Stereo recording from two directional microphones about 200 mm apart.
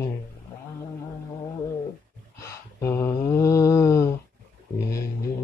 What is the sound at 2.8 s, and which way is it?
Mantra, 15° left (ahead or behind).